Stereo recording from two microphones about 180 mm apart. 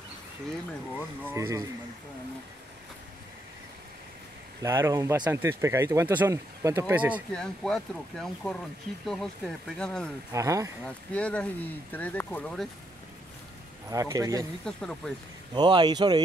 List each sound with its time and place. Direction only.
1.3 s speech: 15° right (ahead or behind)
4.6 s speech: 15° right (ahead or behind)
7.3 s speech: centre (ahead or behind)
10.3 s speech: 15° right (ahead or behind)
10.8 s speech: 5° left (ahead or behind)
13.8 s speech: 15° right (ahead or behind)
14.6 s speech: 5° left (ahead or behind)
15.5 s speech: 25° right (ahead or behind)